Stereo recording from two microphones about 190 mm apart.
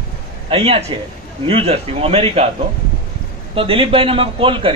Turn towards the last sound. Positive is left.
turn(degrees=-25)  # may be behind; listen again after turning